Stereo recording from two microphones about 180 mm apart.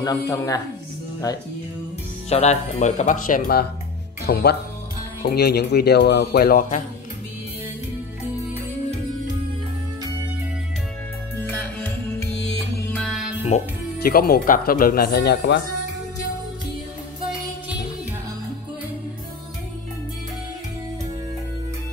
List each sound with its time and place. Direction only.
0.3 s speech: 15° left (ahead or behind)
2.2 s speech: 35° left (ahead or behind); by 6.8 s 55° left (ahead or behind)
11.4 s music: 10° left (ahead or behind)
13.5 s speech: 40° left (ahead or behind)
14.0 s speech: 55° left (ahead or behind)
15.1 s speech: 70° left (ahead or behind)